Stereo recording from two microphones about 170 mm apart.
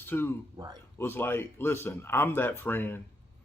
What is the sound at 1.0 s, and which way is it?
Speech, 15° left (ahead or behind).